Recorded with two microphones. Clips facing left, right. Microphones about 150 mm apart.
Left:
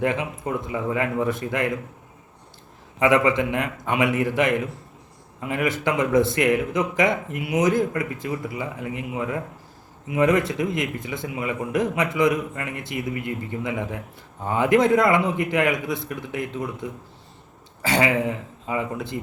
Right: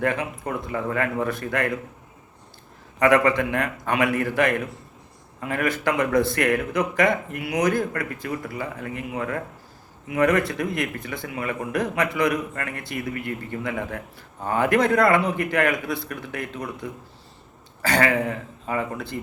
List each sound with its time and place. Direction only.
0.0 s speech: 20° left (ahead or behind)
3.0 s speech: 20° left (ahead or behind)
17.8 s speech: 20° left (ahead or behind)